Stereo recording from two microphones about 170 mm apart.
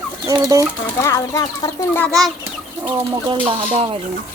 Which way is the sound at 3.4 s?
30° right (ahead or behind).